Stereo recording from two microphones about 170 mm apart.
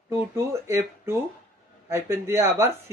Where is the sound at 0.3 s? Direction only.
15° right (ahead or behind).